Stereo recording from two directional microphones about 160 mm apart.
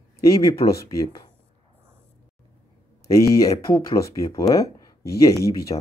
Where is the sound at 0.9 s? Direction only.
30° left (ahead or behind).